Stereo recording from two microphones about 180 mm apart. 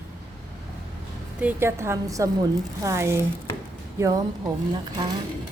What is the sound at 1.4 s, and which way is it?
A woman's voice, 10° right (ahead or behind).